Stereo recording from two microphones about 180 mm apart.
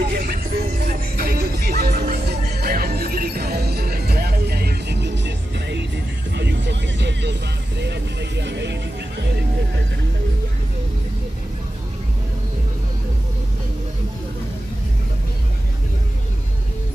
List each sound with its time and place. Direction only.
0.0 s music: 60° right (ahead or behind)